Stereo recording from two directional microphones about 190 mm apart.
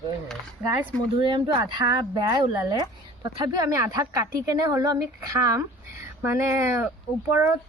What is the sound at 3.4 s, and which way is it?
Speech, 20° right (ahead or behind).